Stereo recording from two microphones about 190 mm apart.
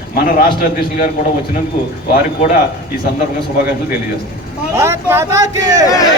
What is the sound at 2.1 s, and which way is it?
Speech, 50° left (ahead or behind).